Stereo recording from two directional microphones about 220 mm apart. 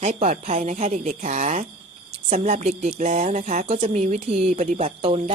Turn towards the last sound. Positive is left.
turn(degrees=-25)  # may be behind; listen again after turning